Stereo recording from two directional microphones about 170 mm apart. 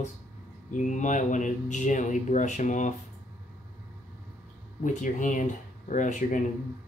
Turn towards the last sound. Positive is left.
turn(degrees=45)  # may be behind; listen again after turning